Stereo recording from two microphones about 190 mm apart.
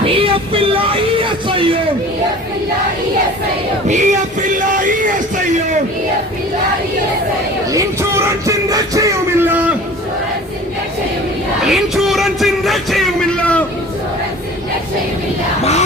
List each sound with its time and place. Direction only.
0.0 s music: 30° right (ahead or behind)
3.8 s music: 40° right (ahead or behind)
7.7 s music: 15° right (ahead or behind)
11.6 s music: centre (ahead or behind)